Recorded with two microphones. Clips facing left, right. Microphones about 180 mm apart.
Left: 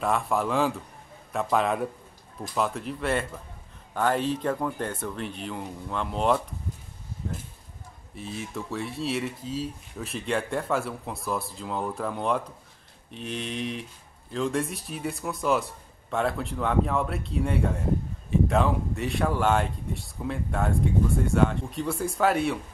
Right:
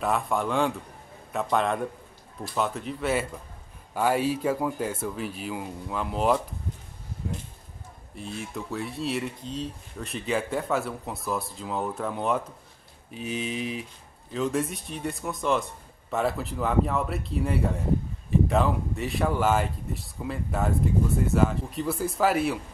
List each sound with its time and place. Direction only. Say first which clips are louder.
0.0 s speech: even; centre (ahead or behind)
8.1 s speech: even; centre (ahead or behind)